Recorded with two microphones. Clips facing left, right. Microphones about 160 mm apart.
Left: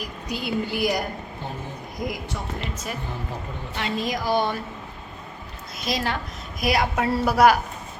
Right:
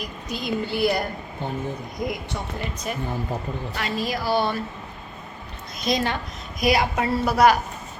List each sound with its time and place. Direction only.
0.0 s a woman's voice: 10° left (ahead or behind)
2.0 s speech: centre (ahead or behind)
3.8 s a woman's voice: 20° left (ahead or behind)
5.8 s a woman's voice: 5° left (ahead or behind)